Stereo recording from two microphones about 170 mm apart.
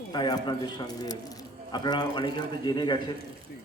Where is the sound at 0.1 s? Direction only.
25° left (ahead or behind).